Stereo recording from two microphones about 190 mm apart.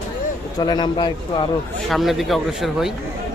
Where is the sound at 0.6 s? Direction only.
20° left (ahead or behind).